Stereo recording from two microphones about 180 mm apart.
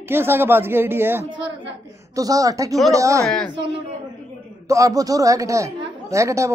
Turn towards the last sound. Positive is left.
turn(degrees=-15)  # may be behind; listen again after turning